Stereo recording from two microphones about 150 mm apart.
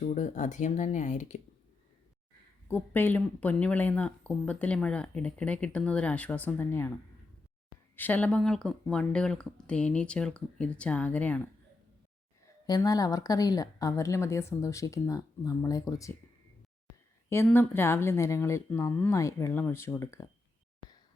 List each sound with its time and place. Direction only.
0.0 s speech: 50° left (ahead or behind)
2.6 s speech: 15° left (ahead or behind)
7.9 s speech: 10° left (ahead or behind)
12.6 s a woman's voice: 25° left (ahead or behind)
17.2 s speech: 15° left (ahead or behind)